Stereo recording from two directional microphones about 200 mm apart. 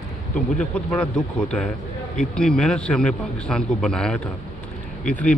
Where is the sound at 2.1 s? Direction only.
5° left (ahead or behind).